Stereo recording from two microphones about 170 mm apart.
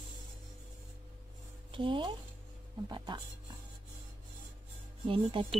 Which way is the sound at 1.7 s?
30° right (ahead or behind).